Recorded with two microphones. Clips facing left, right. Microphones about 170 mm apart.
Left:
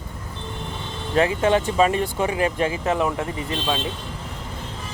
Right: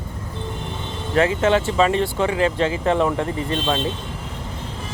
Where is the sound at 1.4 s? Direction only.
15° left (ahead or behind).